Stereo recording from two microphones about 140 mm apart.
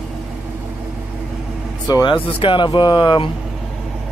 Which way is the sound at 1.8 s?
30° left (ahead or behind).